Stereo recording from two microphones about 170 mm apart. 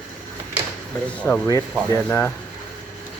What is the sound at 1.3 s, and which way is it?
Speech, 15° left (ahead or behind).